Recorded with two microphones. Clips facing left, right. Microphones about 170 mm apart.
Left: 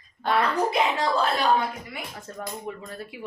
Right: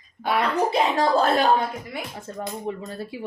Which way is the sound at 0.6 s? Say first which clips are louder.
Right 3 dB; 35° right (ahead or behind).